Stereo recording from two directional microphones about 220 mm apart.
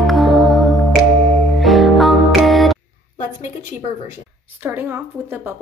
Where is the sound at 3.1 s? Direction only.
35° left (ahead or behind).